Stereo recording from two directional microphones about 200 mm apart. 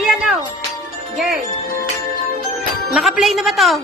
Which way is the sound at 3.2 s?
Centre (ahead or behind).